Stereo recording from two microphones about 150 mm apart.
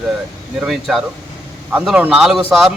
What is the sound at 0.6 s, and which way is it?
Speech, centre (ahead or behind).